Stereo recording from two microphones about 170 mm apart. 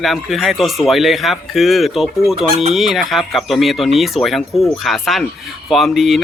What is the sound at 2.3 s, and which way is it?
Chicken, 30° right (ahead or behind).